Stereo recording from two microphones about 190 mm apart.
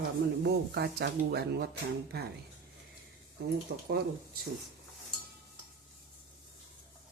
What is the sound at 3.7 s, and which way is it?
Speech, 55° right (ahead or behind).